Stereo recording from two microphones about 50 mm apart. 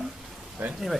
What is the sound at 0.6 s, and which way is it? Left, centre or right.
Speech, right.